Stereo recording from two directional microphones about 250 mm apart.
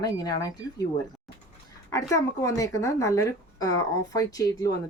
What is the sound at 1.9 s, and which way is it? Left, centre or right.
Speech, centre.